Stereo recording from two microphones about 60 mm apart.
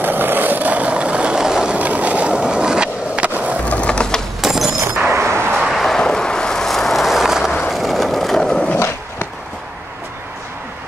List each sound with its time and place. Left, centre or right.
0.0 s vehicle: right; by 1.8 s centre
1.8 s skateboard: right
3.6 s ratchet: left
4.4 s a sound: centre
5.1 s artillery fire: right
5.6 s vehicle: centre
7.7 s skateboard: centre
8.7 s skateboard: left